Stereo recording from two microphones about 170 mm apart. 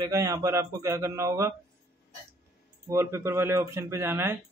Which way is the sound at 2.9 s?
15° right (ahead or behind).